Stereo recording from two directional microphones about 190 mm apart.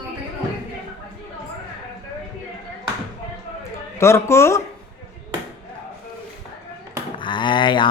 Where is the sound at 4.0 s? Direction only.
15° left (ahead or behind).